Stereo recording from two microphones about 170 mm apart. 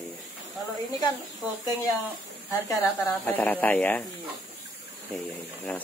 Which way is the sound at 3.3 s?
10° left (ahead or behind).